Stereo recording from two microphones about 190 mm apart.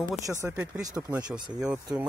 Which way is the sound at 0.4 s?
10° right (ahead or behind).